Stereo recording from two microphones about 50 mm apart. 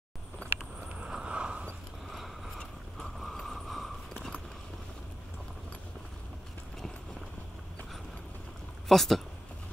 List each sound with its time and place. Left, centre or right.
0.8 s vehicle: centre
2.0 s a sound: centre
8.8 s speech: centre